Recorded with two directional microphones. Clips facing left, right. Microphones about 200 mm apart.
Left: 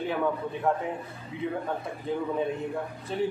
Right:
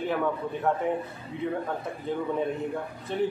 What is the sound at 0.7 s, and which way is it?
Speech, centre (ahead or behind).